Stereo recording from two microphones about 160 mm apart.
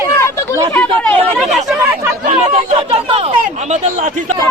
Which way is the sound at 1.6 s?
10° right (ahead or behind).